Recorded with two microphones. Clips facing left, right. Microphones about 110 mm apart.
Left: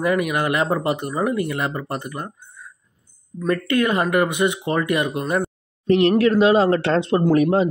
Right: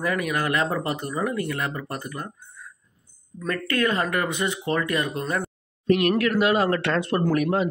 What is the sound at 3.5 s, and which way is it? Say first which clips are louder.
Speech: left 5 dB; 20° left (ahead or behind).